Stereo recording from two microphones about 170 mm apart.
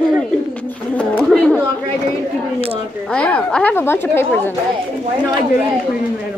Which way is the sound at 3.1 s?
5° left (ahead or behind).